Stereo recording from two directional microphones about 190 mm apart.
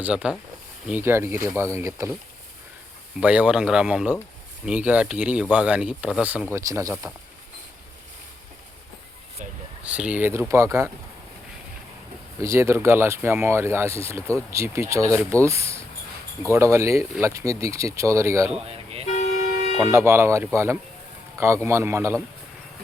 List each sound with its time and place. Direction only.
0.0 s speech: 5° right (ahead or behind)
3.2 s speech: 5° right (ahead or behind)
9.8 s speech: 5° right (ahead or behind)
12.4 s speech: 15° right (ahead or behind)
19.0 s toot: 40° left (ahead or behind)
19.8 s speech: 15° right (ahead or behind)